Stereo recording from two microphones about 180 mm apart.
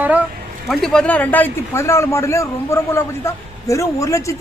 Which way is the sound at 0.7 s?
Centre (ahead or behind).